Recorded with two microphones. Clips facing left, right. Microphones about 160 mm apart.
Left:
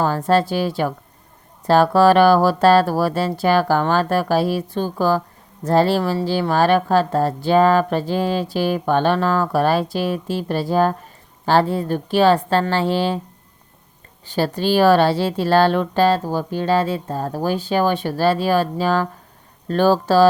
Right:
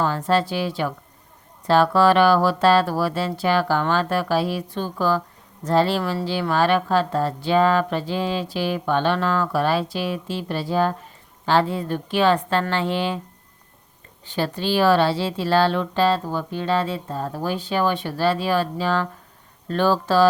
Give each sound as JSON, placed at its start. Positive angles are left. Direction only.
{"t": 0.0, "sound": "speech", "side_deg": 40}
{"t": 14.3, "sound": "speech", "side_deg": 40}